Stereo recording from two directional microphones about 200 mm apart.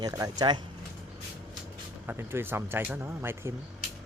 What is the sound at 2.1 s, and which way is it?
Speech, 10° right (ahead or behind).